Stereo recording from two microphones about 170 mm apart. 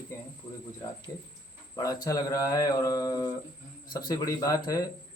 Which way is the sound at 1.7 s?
20° left (ahead or behind).